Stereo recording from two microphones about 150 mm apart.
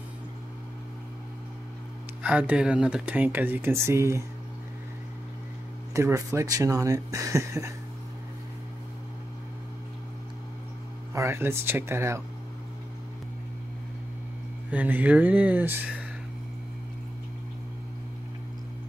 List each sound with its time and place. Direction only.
2.2 s speech: 10° right (ahead or behind)
5.9 s speech: 20° right (ahead or behind)
11.1 s speech: 15° right (ahead or behind)
14.7 s speech: 10° right (ahead or behind)